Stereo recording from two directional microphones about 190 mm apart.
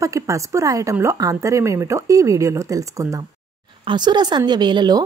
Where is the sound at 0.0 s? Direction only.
15° right (ahead or behind).